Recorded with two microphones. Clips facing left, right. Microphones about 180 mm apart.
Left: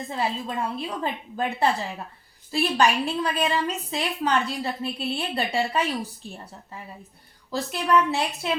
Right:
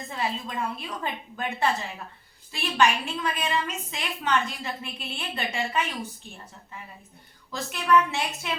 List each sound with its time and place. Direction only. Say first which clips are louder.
0.1 s a woman's voice: left 2 dB; 30° left (ahead or behind)
7.5 s a woman's voice: left 1 dB; 35° left (ahead or behind)